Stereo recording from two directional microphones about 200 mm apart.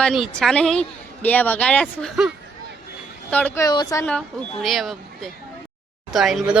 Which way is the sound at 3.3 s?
10° left (ahead or behind).